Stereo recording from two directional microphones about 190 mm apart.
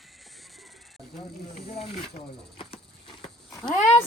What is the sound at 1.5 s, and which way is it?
Speech, 35° left (ahead or behind).